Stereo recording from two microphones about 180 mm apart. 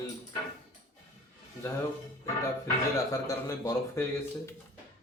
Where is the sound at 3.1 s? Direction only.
20° left (ahead or behind).